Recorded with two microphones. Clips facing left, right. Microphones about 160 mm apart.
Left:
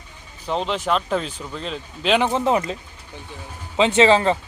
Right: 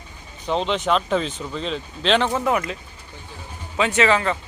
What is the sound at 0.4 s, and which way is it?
Speech, 5° left (ahead or behind).